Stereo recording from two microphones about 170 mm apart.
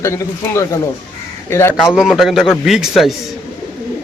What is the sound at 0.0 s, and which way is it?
Speech, 15° left (ahead or behind).